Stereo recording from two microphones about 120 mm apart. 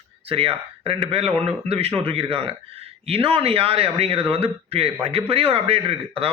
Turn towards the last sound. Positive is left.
turn(degrees=-55)  # may be behind; listen again after turning